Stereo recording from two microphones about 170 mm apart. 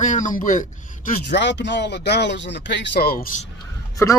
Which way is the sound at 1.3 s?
90° left.